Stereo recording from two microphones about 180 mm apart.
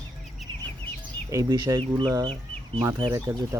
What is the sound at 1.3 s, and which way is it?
Speech, 20° right (ahead or behind).